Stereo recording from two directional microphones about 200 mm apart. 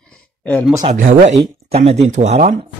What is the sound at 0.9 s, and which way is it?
Speech, 40° right (ahead or behind).